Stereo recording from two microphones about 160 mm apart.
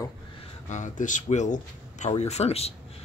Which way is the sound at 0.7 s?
50° left (ahead or behind).